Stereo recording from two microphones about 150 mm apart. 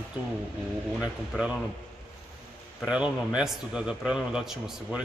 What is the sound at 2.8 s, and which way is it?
A man's voice, 5° right (ahead or behind).